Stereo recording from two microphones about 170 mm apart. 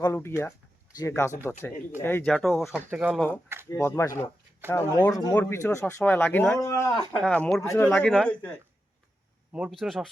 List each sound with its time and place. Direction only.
0.0 s speech: 15° left (ahead or behind); by 3.2 s 5° right (ahead or behind)
3.2 s speech: 10° left (ahead or behind)
7.3 s speech: 5° left (ahead or behind)
9.5 s speech: 5° right (ahead or behind)